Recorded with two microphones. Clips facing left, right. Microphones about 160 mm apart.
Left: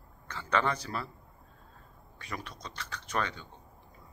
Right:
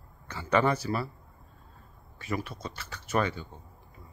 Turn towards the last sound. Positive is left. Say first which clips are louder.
# right 5 dB
turn(degrees=-5)  # may be behind; listen again after turning